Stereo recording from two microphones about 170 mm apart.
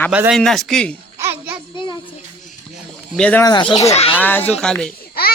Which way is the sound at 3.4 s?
25° left (ahead or behind).